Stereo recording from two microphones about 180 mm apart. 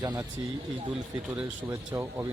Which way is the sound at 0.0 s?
20° right (ahead or behind).